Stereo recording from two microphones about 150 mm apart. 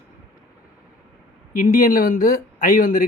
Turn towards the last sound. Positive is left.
turn(degrees=65)  # may be behind; listen again after turning